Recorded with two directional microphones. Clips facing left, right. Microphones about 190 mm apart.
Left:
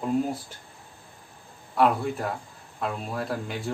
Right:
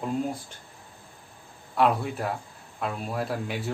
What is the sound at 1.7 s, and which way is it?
Speech, centre (ahead or behind).